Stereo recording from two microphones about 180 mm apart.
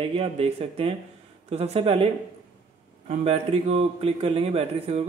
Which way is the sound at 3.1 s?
35° right (ahead or behind).